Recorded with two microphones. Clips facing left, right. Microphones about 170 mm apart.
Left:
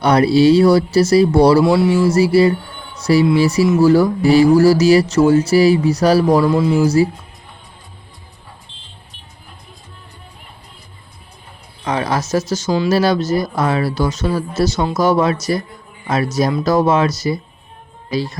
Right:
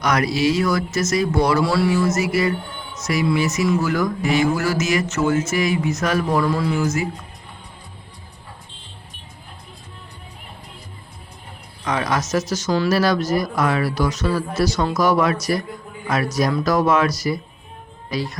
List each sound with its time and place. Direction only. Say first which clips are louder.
0.0 s speech: left 8 dB; 30° left (ahead or behind)
1.6 s speech: left 5 dB; 20° left (ahead or behind)
6.5 s speech: left 7 dB; 25° left (ahead or behind)
11.9 s speech: left 3 dB; 30° left (ahead or behind)